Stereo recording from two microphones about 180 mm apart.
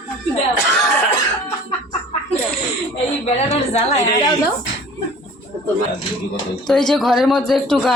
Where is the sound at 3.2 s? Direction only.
35° left (ahead or behind).